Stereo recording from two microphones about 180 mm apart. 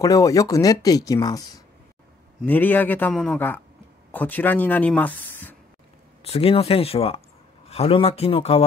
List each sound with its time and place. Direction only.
0.0 s speech: 20° left (ahead or behind)
2.4 s speech: 10° left (ahead or behind)
6.2 s speech: 35° left (ahead or behind)